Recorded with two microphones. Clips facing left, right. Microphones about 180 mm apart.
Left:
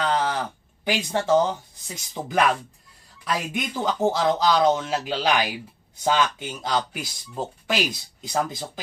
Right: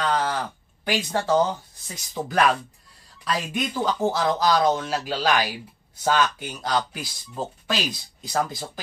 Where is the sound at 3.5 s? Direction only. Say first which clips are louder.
Right 1 dB; 20° left (ahead or behind).